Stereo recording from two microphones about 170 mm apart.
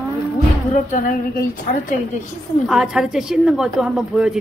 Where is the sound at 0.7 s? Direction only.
55° left (ahead or behind).